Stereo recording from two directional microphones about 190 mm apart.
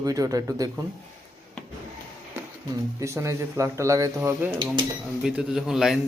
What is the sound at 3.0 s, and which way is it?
A man's voice, 15° right (ahead or behind).